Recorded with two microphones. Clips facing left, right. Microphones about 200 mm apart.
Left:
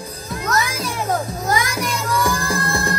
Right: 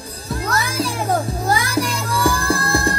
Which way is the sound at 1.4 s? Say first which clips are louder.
Right 1 dB; 30° right (ahead or behind).